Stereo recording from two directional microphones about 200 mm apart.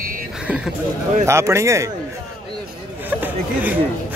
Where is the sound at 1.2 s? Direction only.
15° right (ahead or behind).